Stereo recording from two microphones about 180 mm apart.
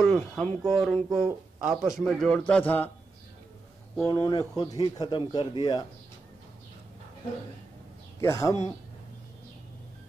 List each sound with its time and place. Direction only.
0.0 s a man's voice: 5° left (ahead or behind)
3.9 s speech: 15° left (ahead or behind)
8.2 s speech: 15° left (ahead or behind)